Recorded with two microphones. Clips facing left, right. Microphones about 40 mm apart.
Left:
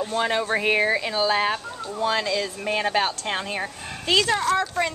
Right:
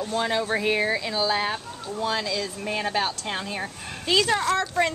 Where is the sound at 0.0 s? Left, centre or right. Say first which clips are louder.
Left 2 dB; centre.